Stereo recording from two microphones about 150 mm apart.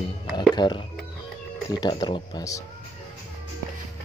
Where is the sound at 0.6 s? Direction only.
30° left (ahead or behind).